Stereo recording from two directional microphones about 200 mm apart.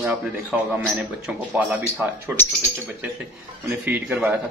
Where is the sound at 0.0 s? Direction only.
5° right (ahead or behind).